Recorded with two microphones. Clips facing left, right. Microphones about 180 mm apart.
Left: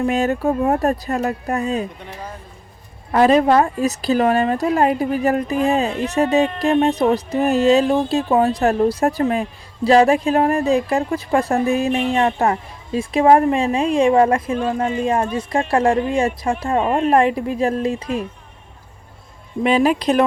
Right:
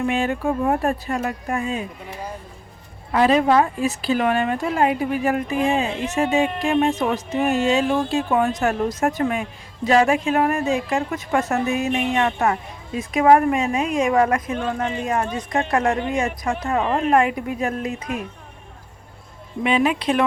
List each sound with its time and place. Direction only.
0.0 s speech: 40° left (ahead or behind)
3.1 s speech: 40° left (ahead or behind)
19.6 s speech: 35° left (ahead or behind)